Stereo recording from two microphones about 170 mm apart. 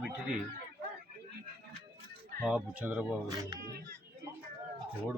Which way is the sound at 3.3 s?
25° right (ahead or behind).